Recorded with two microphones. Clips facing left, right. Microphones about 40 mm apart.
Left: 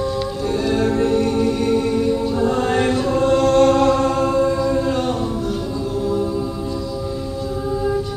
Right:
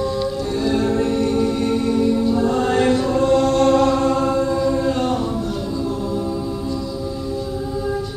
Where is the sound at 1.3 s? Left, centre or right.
Centre.